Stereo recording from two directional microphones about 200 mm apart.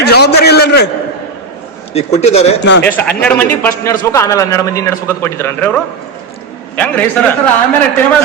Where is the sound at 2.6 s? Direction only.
60° left (ahead or behind).